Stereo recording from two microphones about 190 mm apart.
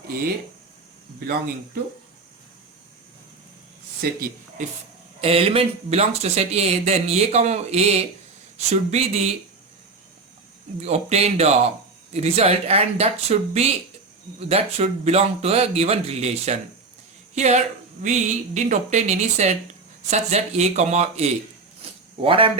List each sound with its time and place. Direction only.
5.2 s speech: 30° right (ahead or behind)
10.8 s speech: 35° right (ahead or behind)